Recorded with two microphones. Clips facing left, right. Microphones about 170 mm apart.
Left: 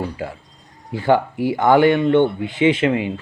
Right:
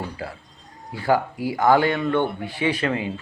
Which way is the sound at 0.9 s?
25° left (ahead or behind).